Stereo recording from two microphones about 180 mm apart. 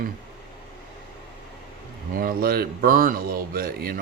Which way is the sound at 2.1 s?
55° right (ahead or behind).